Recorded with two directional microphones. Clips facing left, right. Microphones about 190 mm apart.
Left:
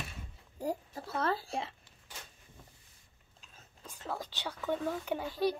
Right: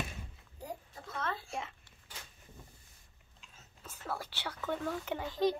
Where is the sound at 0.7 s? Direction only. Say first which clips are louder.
Left 9 dB; 35° left (ahead or behind).